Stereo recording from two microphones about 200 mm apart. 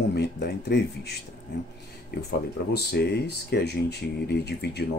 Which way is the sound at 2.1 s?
50° left (ahead or behind).